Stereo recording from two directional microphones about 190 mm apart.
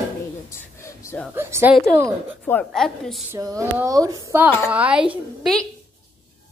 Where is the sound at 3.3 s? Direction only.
15° right (ahead or behind).